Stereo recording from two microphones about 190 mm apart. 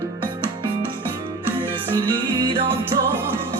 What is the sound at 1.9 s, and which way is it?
Music, 25° right (ahead or behind).